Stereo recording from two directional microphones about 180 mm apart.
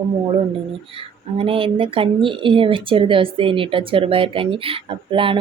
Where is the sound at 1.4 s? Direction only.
30° right (ahead or behind).